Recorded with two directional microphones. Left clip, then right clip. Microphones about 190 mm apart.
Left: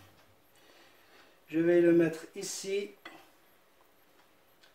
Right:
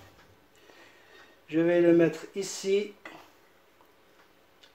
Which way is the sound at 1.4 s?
30° right (ahead or behind).